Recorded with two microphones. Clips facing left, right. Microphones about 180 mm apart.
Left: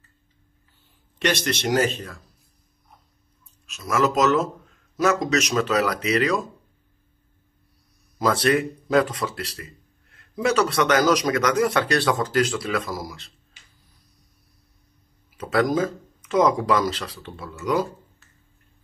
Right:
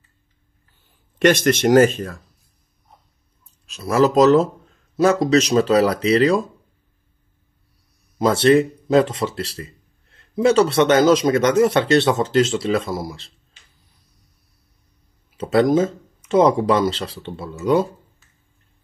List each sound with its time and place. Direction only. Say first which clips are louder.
1.2 s speech: right 9 dB; 50° right (ahead or behind)
3.6 s speech: right 6 dB; 35° right (ahead or behind)
8.2 s a man's voice: right 6 dB; 25° right (ahead or behind)
15.3 s a man's voice: right 6 dB; 25° right (ahead or behind)